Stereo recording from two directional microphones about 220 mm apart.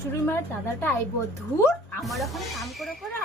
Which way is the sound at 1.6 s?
10° left (ahead or behind).